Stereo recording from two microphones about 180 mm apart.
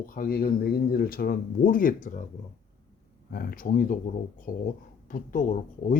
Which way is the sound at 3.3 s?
55° left (ahead or behind).